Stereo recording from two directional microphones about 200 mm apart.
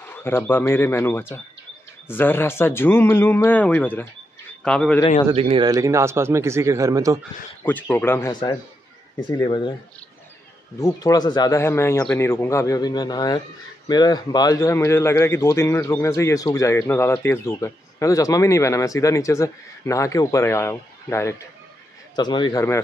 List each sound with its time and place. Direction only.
0.0 s a man's voice: 10° left (ahead or behind)
5.3 s speech: 25° right (ahead or behind)
7.6 s a man's voice: 10° left (ahead or behind)
10.8 s a man's voice: 20° left (ahead or behind)